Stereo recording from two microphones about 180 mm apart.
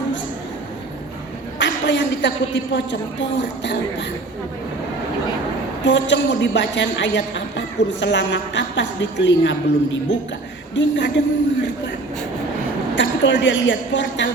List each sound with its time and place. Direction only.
1.5 s a woman's voice: 90° left
5.8 s a woman's voice: 90° left
13.0 s a woman's voice: 85° left